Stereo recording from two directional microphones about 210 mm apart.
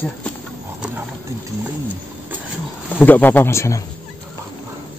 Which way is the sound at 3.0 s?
10° left (ahead or behind).